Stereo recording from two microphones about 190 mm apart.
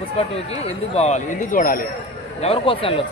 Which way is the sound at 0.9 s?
35° left (ahead or behind).